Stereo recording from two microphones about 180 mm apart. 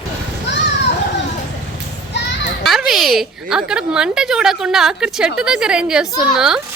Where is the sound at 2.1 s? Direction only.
80° left.